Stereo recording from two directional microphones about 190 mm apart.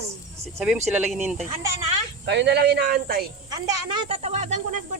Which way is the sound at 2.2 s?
60° right (ahead or behind).